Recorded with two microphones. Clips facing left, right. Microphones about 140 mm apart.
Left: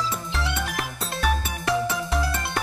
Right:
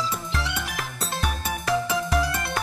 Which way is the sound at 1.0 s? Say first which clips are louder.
Left 3 dB; centre (ahead or behind).